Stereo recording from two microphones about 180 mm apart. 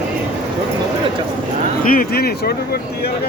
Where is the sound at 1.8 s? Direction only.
50° left (ahead or behind).